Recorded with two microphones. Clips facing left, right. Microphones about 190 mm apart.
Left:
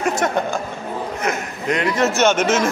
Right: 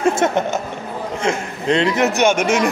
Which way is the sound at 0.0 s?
25° right (ahead or behind).